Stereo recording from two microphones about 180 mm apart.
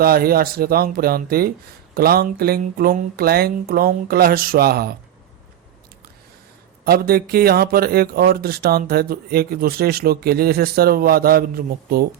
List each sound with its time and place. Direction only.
0.0 s speech: 55° right (ahead or behind)
6.8 s speech: 60° right (ahead or behind)